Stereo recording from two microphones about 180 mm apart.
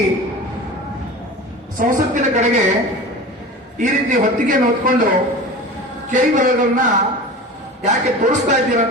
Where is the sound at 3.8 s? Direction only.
45° right (ahead or behind).